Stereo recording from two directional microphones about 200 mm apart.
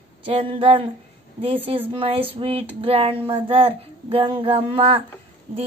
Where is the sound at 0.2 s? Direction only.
30° right (ahead or behind).